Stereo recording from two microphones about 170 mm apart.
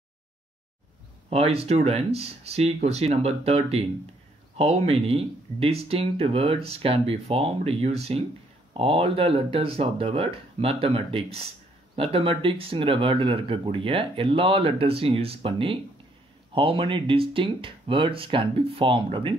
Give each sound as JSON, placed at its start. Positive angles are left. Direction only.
{"t": 1.3, "sound": "speech", "side_deg": -35}